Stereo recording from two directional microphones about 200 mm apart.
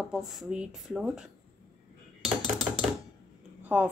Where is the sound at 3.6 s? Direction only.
5° right (ahead or behind).